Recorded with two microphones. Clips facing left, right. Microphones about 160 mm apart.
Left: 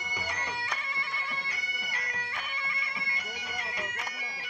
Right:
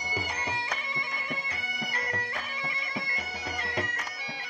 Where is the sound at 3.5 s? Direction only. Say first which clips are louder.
Right 6 dB; 65° right (ahead or behind).